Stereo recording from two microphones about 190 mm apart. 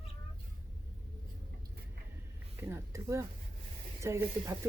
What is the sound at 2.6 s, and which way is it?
Speech, 15° right (ahead or behind).